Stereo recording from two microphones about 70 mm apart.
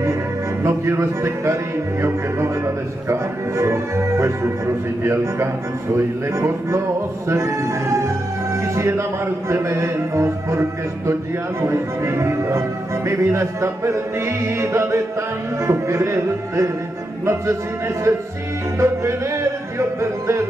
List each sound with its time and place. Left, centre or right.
0.7 s a man's voice: right
18.8 s music: right